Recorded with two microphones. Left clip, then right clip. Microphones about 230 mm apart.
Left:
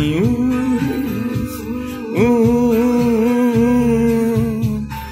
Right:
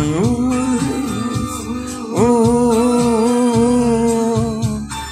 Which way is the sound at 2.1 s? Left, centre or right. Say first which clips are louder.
Right 1 dB; left.